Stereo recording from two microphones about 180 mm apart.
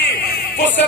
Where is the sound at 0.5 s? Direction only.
70° left (ahead or behind).